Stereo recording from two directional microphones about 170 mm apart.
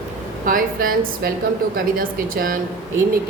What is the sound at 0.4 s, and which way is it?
A woman's voice, 55° right (ahead or behind).